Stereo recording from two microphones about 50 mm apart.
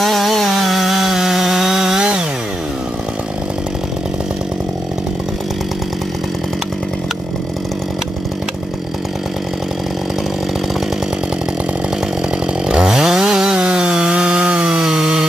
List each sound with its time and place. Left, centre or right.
0.0 s chainsaw: centre
12.6 s chainsaw: centre